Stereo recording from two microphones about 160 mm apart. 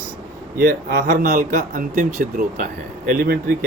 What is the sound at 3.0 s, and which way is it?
Speech, 70° right (ahead or behind).